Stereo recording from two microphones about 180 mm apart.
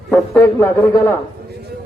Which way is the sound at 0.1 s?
10° left (ahead or behind).